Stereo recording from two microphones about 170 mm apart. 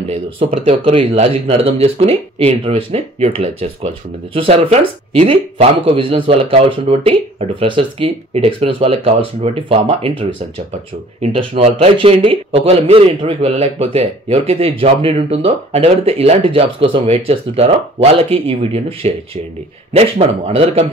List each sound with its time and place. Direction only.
0.5 s speech: 35° right (ahead or behind)